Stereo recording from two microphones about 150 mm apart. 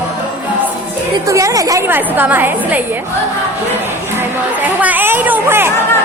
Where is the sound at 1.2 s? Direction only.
20° right (ahead or behind).